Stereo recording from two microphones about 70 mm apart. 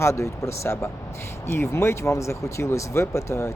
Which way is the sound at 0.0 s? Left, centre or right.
Left.